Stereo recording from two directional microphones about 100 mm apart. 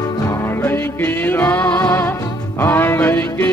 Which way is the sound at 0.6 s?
20° left (ahead or behind).